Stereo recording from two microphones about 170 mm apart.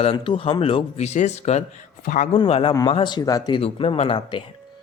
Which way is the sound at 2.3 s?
30° left (ahead or behind).